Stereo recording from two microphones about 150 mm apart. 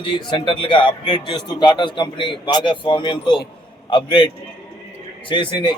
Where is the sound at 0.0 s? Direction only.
35° left (ahead or behind).